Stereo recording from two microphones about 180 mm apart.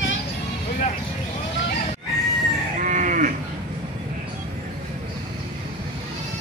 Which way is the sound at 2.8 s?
45° right (ahead or behind).